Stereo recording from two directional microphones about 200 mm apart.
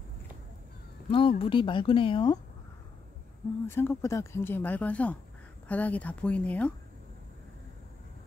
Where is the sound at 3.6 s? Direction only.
10° left (ahead or behind).